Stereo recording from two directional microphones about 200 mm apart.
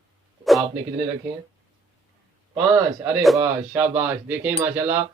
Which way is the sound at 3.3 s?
15° right (ahead or behind).